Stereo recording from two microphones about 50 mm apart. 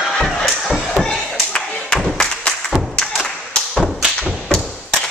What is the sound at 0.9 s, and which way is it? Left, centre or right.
Slam, centre.